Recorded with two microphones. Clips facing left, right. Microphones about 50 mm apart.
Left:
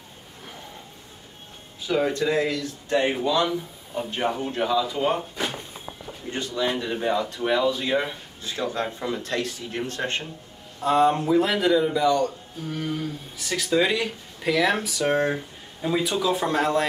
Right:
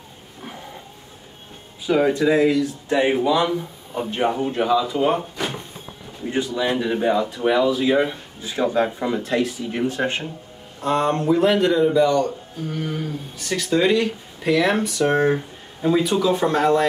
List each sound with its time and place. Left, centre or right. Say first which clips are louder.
1.9 s speech: right 5 dB; centre
6.3 s speech: right 4 dB; centre
10.8 s speech: left 1 dB; centre
13.7 s speech: right 4 dB; centre
15.3 s a sound: right 6 dB; centre
16.2 s speech: right 4 dB; centre